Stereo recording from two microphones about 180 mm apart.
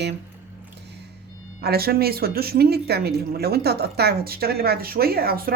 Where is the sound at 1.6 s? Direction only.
60° right (ahead or behind).